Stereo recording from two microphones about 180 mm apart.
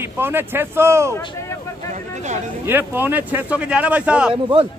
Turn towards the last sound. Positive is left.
turn(degrees=-30)  # may be behind; listen again after turning